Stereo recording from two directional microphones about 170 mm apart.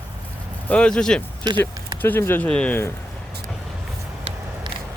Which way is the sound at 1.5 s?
25° right (ahead or behind).